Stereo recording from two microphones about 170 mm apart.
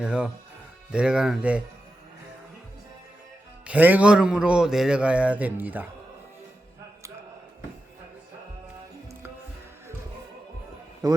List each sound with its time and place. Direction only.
0.0 s speech: 5° right (ahead or behind)
3.7 s a man's voice: 10° right (ahead or behind)
11.0 s a man's voice: 20° right (ahead or behind)